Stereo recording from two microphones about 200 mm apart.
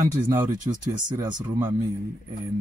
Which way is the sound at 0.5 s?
40° right (ahead or behind).